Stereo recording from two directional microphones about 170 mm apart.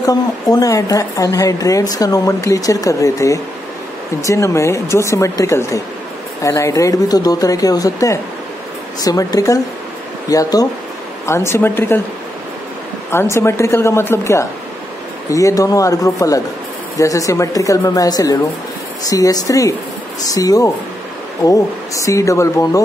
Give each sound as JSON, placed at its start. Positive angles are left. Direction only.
{"t": 0.0, "sound": "a woman's voice", "side_deg": 20}
{"t": 13.1, "sound": "a woman's voice", "side_deg": 15}